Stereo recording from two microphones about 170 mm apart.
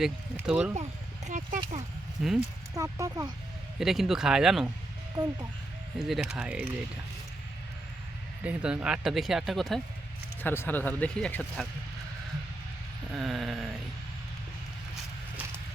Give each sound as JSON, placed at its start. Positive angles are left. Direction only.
{"t": 0.0, "sound": "speech", "side_deg": -5}
{"t": 0.8, "sound": "a sound", "side_deg": -45}
{"t": 2.2, "sound": "speech", "side_deg": -5}
{"t": 2.7, "sound": "speech", "side_deg": -20}
{"t": 3.8, "sound": "speech", "side_deg": 0}
{"t": 5.1, "sound": "speech", "side_deg": -25}
{"t": 6.0, "sound": "speech", "side_deg": 0}
{"t": 8.4, "sound": "speech", "side_deg": -5}
{"t": 10.4, "sound": "speech", "side_deg": 10}
{"t": 13.1, "sound": "speech", "side_deg": 0}